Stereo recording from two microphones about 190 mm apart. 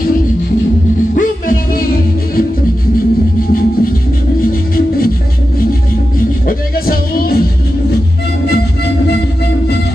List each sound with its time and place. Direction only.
1.1 s music: 50° left (ahead or behind)
4.4 s music: 50° left (ahead or behind)
6.4 s music: 50° left (ahead or behind)